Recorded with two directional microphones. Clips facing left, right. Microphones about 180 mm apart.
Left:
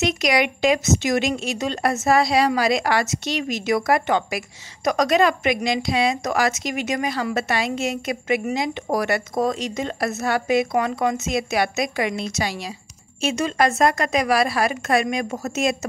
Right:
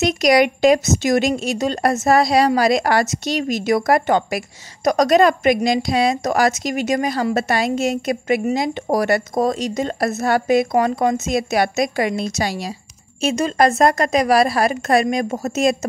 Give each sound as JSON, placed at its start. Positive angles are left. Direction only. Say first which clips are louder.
{"t": 0.0, "sound": "a woman's voice", "louder": "right 6 dB", "side_deg": -40}